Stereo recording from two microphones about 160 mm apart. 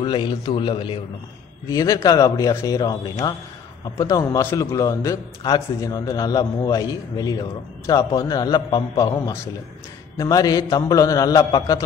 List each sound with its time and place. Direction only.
0.0 s a man's voice: 30° left (ahead or behind)
1.7 s a man's voice: 20° left (ahead or behind)